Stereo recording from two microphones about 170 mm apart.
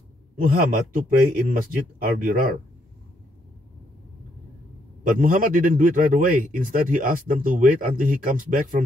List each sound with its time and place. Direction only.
0.4 s speech: 55° right (ahead or behind)
5.0 s a man's voice: 55° right (ahead or behind)